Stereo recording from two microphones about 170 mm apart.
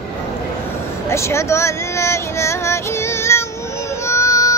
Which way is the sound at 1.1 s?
15° left (ahead or behind).